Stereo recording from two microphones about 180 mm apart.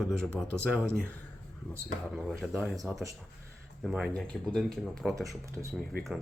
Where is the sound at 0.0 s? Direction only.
5° left (ahead or behind).